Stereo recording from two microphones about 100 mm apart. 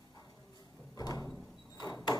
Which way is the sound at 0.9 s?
40° left (ahead or behind).